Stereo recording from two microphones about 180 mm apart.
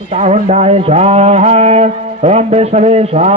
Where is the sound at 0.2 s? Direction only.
35° right (ahead or behind).